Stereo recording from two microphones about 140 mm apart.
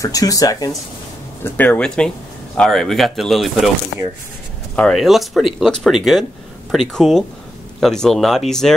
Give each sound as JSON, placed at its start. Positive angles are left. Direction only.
{"t": 0.0, "sound": "speech", "side_deg": 25}
{"t": 1.4, "sound": "speech", "side_deg": 10}
{"t": 4.7, "sound": "speech", "side_deg": 0}